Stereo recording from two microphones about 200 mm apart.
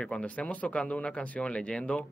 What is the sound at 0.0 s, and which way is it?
Speech, 5° left (ahead or behind).